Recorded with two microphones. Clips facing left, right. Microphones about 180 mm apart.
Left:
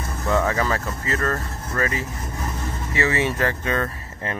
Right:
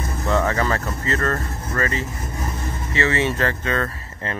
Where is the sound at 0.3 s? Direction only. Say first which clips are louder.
Right 1 dB; 10° left (ahead or behind).